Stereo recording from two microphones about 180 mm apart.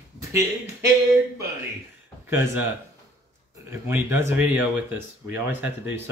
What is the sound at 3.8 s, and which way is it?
Speech, 10° right (ahead or behind).